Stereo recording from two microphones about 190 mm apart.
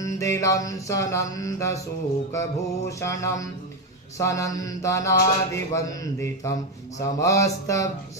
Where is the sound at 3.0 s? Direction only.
15° left (ahead or behind).